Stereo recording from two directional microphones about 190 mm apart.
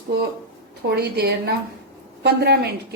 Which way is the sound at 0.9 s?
55° right (ahead or behind).